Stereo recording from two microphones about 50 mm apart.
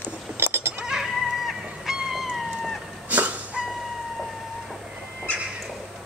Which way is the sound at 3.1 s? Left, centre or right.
Right.